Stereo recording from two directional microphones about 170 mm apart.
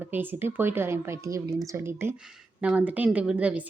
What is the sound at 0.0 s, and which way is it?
A woman's voice, 10° right (ahead or behind).